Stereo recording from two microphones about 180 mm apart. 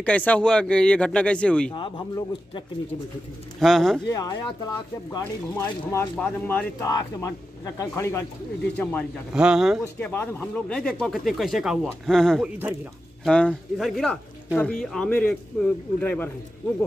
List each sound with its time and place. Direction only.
0.0 s speech: 10° left (ahead or behind)
1.8 s speech: 25° left (ahead or behind)
3.5 s speech: centre (ahead or behind)
4.1 s speech: 20° left (ahead or behind)
9.3 s speech: 5° right (ahead or behind)
9.9 s speech: 10° left (ahead or behind)